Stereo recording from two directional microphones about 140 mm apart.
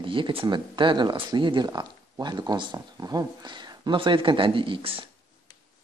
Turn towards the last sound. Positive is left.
turn(degrees=-40)  # may be behind; listen again after turning